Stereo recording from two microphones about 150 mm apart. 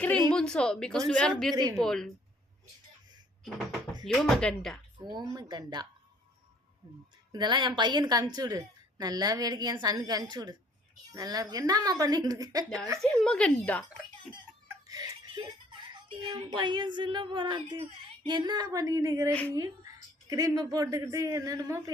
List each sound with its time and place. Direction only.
0.0 s a sound: 10° left (ahead or behind)
0.3 s a woman's voice: 5° left (ahead or behind)
4.0 s a woman's voice: centre (ahead or behind)
5.0 s a woman's voice: 30° right (ahead or behind)
7.3 s a woman's voice: 30° right (ahead or behind)
13.0 s speech: 5° left (ahead or behind)
14.8 s a child's voice: 25° right (ahead or behind)
19.3 s speech: 10° left (ahead or behind)
20.3 s a woman's voice: 25° right (ahead or behind)